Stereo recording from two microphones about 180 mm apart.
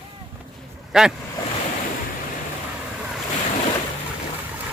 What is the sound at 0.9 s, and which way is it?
Speech, centre (ahead or behind).